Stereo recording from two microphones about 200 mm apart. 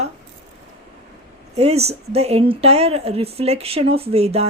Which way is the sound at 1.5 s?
30° right (ahead or behind).